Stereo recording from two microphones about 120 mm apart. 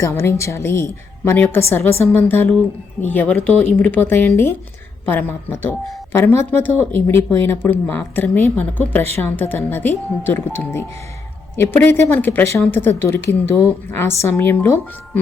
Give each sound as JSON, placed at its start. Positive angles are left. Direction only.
{"t": 0.0, "sound": "a woman's voice", "side_deg": 20}
{"t": 11.6, "sound": "a woman's voice", "side_deg": 20}